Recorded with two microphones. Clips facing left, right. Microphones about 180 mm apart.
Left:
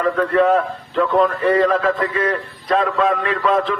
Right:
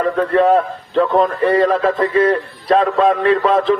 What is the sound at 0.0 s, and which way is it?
A man's voice, 35° right (ahead or behind).